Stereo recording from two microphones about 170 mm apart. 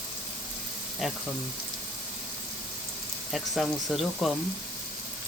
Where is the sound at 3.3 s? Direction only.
Centre (ahead or behind).